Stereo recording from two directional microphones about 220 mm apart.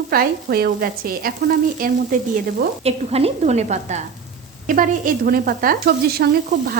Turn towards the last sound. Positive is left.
turn(degrees=-45)  # may be behind; listen again after turning